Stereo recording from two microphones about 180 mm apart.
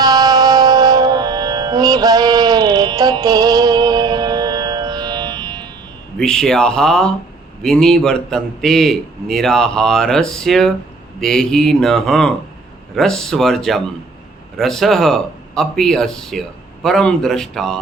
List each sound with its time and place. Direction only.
0.0 s music: 20° right (ahead or behind)
6.1 s speech: 5° left (ahead or behind)